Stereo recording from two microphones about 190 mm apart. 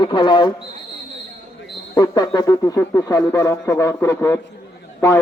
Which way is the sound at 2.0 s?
20° left (ahead or behind).